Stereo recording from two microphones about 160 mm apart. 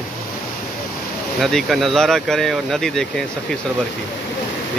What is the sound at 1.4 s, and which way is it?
Speech, centre (ahead or behind).